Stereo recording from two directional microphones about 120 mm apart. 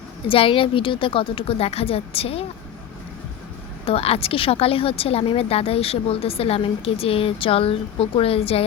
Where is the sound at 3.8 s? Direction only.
55° left (ahead or behind).